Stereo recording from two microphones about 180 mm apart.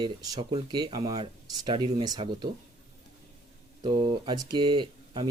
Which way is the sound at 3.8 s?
25° right (ahead or behind).